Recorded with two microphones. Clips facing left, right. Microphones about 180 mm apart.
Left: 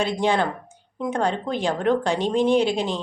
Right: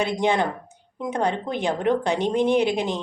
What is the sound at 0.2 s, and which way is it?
Speech, 20° right (ahead or behind).